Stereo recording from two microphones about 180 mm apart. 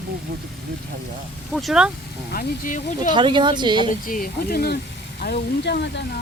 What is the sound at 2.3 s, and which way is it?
Speech, 45° left (ahead or behind).